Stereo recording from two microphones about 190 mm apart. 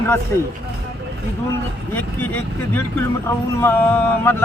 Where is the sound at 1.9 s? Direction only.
10° left (ahead or behind).